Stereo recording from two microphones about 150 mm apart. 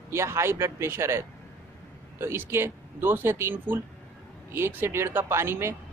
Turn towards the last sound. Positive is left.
turn(degrees=-15)  # may be behind; listen again after turning